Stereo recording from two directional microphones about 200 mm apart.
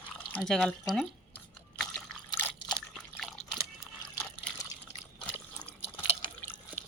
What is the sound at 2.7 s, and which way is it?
Liquid, centre (ahead or behind).